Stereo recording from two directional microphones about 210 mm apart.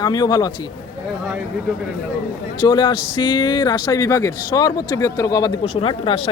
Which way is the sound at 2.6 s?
20° left (ahead or behind).